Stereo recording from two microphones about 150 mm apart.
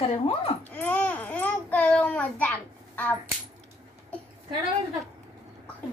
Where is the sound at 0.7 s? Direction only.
10° left (ahead or behind).